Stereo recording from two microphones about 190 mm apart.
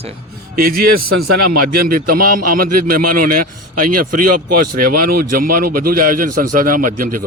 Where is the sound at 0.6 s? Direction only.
50° right (ahead or behind).